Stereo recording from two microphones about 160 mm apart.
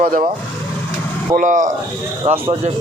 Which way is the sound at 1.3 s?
55° right (ahead or behind).